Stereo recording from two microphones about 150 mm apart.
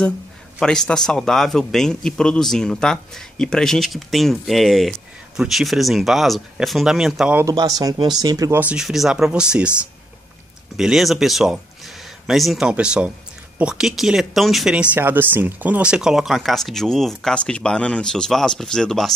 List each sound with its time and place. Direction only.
0.6 s a man's voice: 5° left (ahead or behind)
7.3 s speech: 25° right (ahead or behind)
8.5 s a man's voice: 5° right (ahead or behind)
10.8 s a man's voice: centre (ahead or behind)
15.0 s a man's voice: 15° right (ahead or behind); by 19.1 s 5° left (ahead or behind)